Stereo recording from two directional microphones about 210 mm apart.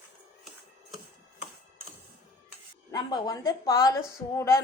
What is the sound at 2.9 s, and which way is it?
Speech, 20° left (ahead or behind).